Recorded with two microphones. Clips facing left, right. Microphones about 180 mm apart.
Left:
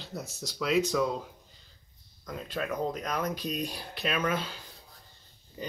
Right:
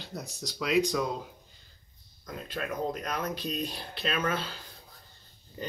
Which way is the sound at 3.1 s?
10° left (ahead or behind).